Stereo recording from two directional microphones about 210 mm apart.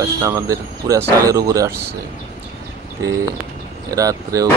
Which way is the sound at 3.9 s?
15° right (ahead or behind).